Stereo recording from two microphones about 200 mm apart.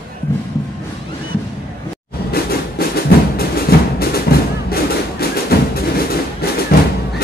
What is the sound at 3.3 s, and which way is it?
Music, 50° left (ahead or behind).